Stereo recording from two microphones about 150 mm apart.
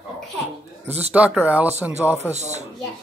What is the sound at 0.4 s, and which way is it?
Speech, 45° right (ahead or behind).